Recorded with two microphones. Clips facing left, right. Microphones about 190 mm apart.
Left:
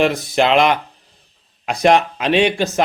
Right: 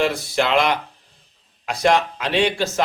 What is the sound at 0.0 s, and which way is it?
Speech, 20° left (ahead or behind).